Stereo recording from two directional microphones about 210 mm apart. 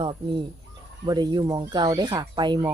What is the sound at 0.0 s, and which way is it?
A woman's voice, 25° right (ahead or behind).